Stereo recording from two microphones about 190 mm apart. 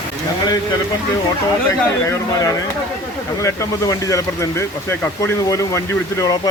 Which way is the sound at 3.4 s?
15° left (ahead or behind).